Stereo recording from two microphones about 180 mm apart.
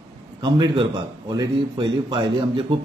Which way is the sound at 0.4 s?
25° right (ahead or behind).